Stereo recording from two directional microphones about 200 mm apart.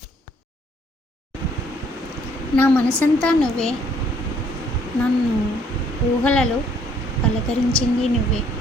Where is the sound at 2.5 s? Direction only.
10° left (ahead or behind).